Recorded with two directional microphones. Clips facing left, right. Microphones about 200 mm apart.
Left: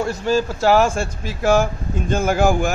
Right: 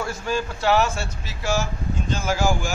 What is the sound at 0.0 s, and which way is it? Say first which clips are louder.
Speech: left 7 dB; 30° left (ahead or behind).